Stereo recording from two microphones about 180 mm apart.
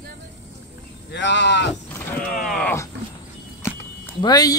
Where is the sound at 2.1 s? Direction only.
5° left (ahead or behind).